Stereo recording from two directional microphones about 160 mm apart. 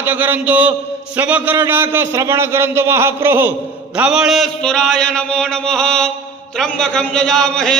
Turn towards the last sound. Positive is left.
turn(degrees=5)  # may be behind; listen again after turning